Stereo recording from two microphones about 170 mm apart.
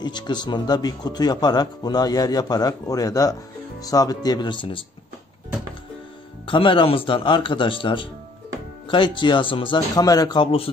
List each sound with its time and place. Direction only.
0.0 s speech: 25° left (ahead or behind)
6.4 s speech: 30° left (ahead or behind)